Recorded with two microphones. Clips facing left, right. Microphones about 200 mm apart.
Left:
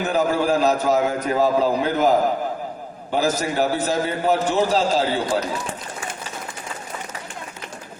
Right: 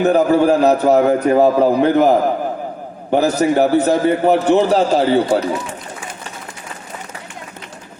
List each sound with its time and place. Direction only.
0.0 s a man's voice: 60° right (ahead or behind)
3.1 s a man's voice: 60° right (ahead or behind)